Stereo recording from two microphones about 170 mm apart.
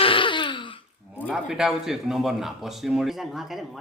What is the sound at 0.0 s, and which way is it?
Throat clearing, 30° left (ahead or behind).